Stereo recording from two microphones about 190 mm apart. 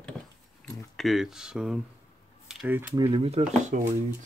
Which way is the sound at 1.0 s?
Centre (ahead or behind).